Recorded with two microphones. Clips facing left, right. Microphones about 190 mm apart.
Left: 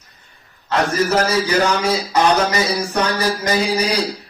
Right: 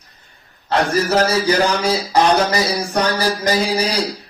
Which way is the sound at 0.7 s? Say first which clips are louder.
Right 1 dB; 30° right (ahead or behind).